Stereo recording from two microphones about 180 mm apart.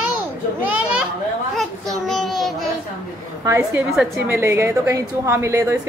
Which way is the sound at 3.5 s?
15° right (ahead or behind).